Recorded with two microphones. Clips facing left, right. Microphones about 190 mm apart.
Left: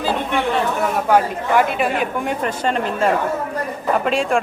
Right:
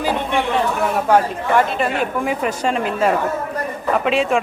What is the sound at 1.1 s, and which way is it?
A woman's voice, centre (ahead or behind).